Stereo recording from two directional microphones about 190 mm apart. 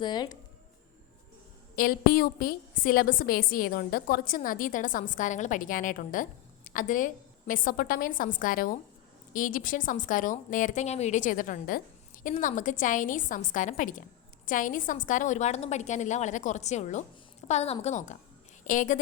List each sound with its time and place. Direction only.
0.0 s speech: 20° left (ahead or behind)
1.7 s a woman's voice: 50° left (ahead or behind)